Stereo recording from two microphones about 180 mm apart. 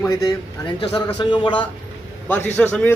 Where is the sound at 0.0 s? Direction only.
15° left (ahead or behind).